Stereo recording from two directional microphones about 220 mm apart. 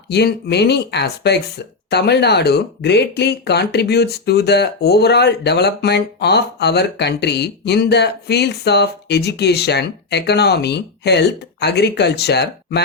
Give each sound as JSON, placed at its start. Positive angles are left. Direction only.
{"t": 0.1, "sound": "speech", "side_deg": 45}